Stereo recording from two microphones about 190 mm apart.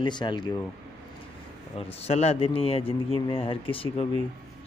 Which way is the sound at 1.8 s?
30° left (ahead or behind).